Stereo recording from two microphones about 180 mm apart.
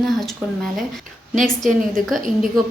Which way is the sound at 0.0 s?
Centre (ahead or behind).